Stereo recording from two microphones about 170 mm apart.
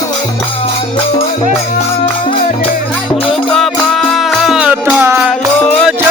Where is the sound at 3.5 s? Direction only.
Centre (ahead or behind).